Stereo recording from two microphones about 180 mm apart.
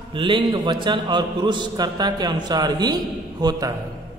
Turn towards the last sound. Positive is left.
turn(degrees=-20)  # may be behind; listen again after turning